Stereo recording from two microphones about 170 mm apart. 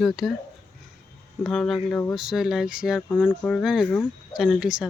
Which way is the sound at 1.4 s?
Centre (ahead or behind).